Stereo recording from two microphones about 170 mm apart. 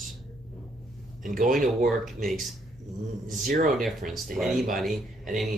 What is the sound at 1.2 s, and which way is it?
Speech, 50° right (ahead or behind).